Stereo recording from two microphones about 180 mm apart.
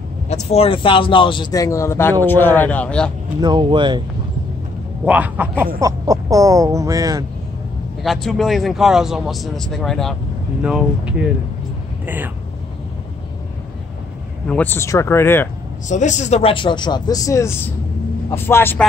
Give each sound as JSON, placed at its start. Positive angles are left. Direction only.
{"t": 0.3, "sound": "speech", "side_deg": 35}
{"t": 3.3, "sound": "speech", "side_deg": -25}
{"t": 5.0, "sound": "speech", "side_deg": -10}
{"t": 8.0, "sound": "a man's voice", "side_deg": 0}
{"t": 14.5, "sound": "speech", "side_deg": 10}
{"t": 15.9, "sound": "speech", "side_deg": 40}